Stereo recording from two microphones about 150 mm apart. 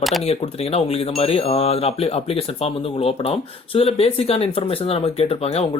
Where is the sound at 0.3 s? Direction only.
45° left (ahead or behind).